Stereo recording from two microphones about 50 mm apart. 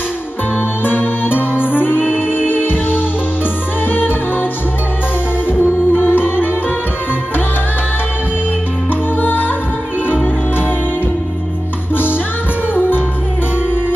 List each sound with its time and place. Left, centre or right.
0.8 s music: left
5.5 s music: left
9.2 s music: left
11.9 s music: left